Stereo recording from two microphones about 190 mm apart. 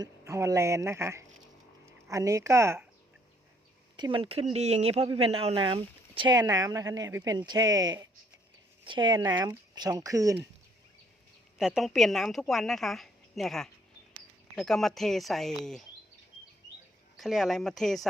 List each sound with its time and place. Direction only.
0.0 s speech: 15° right (ahead or behind)
3.9 s speech: 25° right (ahead or behind)
11.5 s a woman's voice: centre (ahead or behind)
17.2 s a woman's voice: centre (ahead or behind)